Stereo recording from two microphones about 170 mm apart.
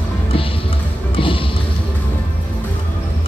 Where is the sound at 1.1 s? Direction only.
30° left (ahead or behind).